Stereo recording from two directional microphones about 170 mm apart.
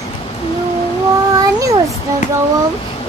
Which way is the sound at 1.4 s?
20° right (ahead or behind).